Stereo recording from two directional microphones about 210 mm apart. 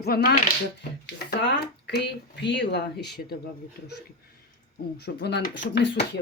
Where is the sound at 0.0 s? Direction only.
45° left (ahead or behind).